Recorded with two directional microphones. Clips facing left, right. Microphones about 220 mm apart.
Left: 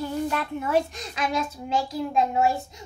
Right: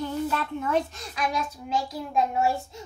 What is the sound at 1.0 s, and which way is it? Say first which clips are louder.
A child's voice: left 2 dB; 25° left (ahead or behind).